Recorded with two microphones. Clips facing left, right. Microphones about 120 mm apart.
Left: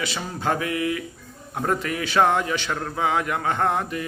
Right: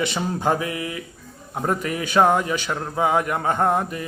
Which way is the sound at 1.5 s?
15° right (ahead or behind).